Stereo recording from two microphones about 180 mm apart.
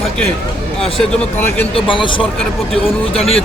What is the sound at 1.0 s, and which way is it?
Speech, 10° left (ahead or behind).